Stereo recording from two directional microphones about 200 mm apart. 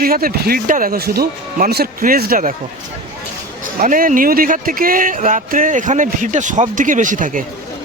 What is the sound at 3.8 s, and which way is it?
Speech, 45° right (ahead or behind).